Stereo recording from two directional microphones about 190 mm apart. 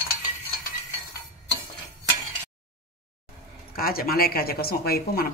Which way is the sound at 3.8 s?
50° left (ahead or behind).